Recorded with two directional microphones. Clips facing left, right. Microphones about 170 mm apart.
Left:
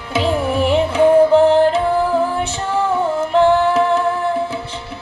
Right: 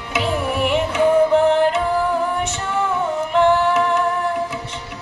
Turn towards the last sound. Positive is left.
turn(degrees=30)  # may be behind; listen again after turning